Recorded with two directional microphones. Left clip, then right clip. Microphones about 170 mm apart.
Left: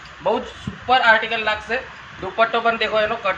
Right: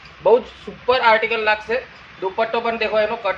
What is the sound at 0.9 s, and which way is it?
Speech, 60° right (ahead or behind).